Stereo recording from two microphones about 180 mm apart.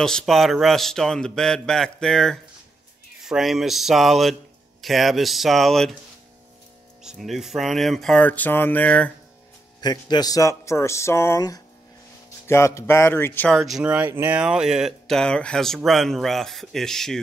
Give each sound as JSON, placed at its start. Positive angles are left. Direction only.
{"t": 0.0, "sound": "speech", "side_deg": 0}
{"t": 7.0, "sound": "speech", "side_deg": 0}
{"t": 9.8, "sound": "a man's voice", "side_deg": 25}